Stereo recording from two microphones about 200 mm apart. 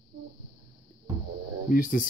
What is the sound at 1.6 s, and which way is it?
Speech, 45° left (ahead or behind).